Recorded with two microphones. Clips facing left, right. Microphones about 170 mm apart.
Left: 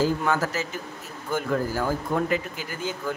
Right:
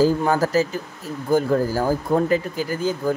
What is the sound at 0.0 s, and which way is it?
Speech, 35° right (ahead or behind).